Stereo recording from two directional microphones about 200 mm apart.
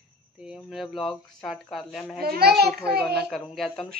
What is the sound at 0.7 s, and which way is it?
Speech, centre (ahead or behind).